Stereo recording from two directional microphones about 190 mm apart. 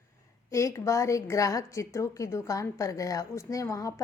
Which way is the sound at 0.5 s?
15° left (ahead or behind).